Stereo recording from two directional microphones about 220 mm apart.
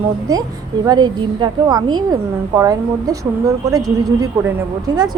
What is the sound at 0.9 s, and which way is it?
A woman's voice, 20° right (ahead or behind).